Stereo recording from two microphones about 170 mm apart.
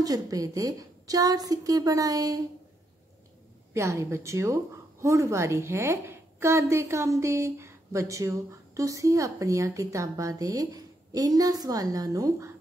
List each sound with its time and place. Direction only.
0.0 s a woman's voice: 20° right (ahead or behind)
3.7 s a woman's voice: 15° right (ahead or behind)